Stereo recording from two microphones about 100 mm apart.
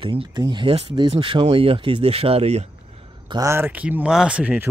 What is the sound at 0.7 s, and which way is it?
Speech, 75° right (ahead or behind).